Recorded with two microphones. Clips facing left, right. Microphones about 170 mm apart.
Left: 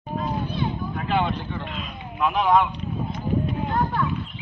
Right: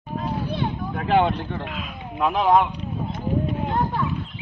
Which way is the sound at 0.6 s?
50° right (ahead or behind).